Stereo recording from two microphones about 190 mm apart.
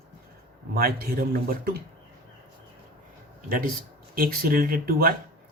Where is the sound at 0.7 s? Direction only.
55° right (ahead or behind).